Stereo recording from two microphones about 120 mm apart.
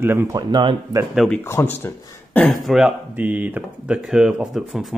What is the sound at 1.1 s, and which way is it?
Speech, 5° left (ahead or behind).